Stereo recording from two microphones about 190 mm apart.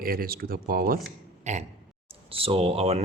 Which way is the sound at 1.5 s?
40° right (ahead or behind).